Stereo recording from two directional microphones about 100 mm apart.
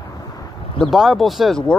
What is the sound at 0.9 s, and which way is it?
Speech, centre (ahead or behind).